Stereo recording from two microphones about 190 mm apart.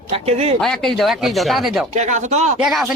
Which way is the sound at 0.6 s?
Centre (ahead or behind).